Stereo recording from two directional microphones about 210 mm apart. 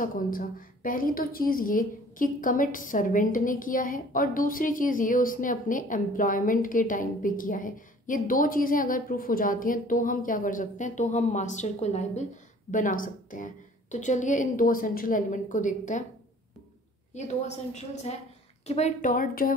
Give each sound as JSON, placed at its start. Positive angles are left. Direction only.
{"t": 0.0, "sound": "a woman's voice", "side_deg": 40}
{"t": 17.1, "sound": "a woman's voice", "side_deg": 30}